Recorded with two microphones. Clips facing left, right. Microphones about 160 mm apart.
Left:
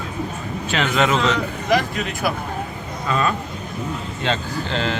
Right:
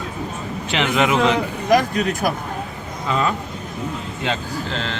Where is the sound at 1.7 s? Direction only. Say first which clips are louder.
Right 4 dB; 45° right (ahead or behind).